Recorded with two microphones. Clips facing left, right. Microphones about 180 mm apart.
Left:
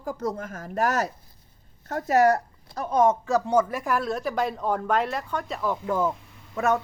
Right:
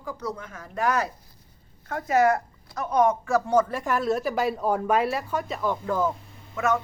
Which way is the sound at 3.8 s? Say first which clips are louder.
Right 2 dB; centre (ahead or behind).